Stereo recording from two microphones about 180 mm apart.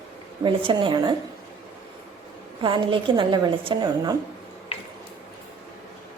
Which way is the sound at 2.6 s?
25° right (ahead or behind).